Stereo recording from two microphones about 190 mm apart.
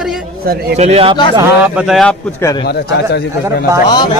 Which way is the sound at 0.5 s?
55° right (ahead or behind).